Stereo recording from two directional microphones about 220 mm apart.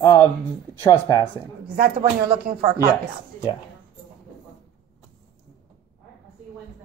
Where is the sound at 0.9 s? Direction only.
15° left (ahead or behind).